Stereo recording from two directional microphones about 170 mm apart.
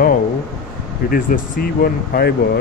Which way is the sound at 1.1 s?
55° left (ahead or behind).